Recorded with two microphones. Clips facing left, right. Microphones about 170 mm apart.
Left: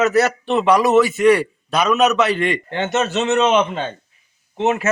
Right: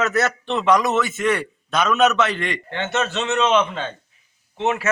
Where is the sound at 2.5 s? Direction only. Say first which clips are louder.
Left 5 dB; 15° left (ahead or behind).